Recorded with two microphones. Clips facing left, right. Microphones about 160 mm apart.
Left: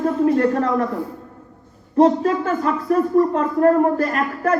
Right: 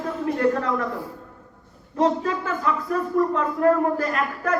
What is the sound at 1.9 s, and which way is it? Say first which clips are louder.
Speech: left 7 dB; 35° left (ahead or behind).